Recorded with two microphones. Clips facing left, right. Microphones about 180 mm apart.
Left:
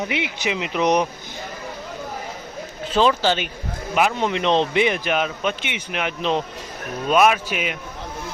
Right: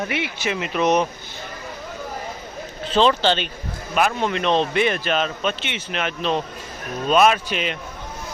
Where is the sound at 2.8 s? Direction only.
10° left (ahead or behind).